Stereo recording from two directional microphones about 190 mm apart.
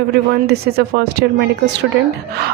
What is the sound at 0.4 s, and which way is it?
Speech, 60° right (ahead or behind).